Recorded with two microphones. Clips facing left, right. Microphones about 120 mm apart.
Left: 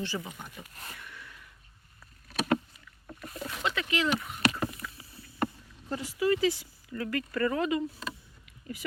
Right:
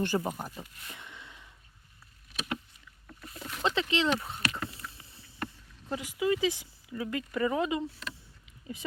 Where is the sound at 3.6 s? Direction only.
30° right (ahead or behind).